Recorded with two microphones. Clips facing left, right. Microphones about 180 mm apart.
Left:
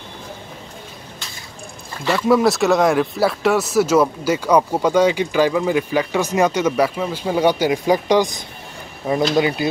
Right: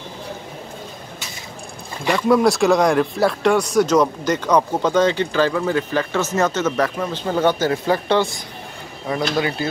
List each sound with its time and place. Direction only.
2.1 s speech: centre (ahead or behind); by 9.7 s 15° left (ahead or behind)